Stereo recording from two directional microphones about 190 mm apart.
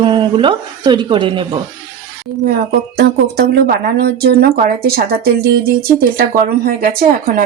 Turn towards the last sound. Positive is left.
turn(degrees=-45)  # may be behind; listen again after turning